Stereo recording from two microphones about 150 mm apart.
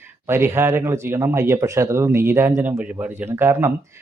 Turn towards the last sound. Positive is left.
turn(degrees=-15)  # may be behind; listen again after turning